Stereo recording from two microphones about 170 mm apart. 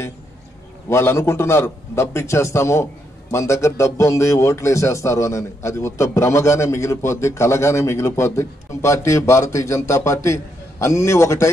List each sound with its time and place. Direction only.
0.8 s a man's voice: 15° left (ahead or behind)